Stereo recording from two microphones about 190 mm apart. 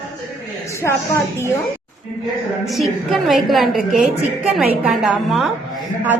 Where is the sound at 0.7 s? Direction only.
15° left (ahead or behind).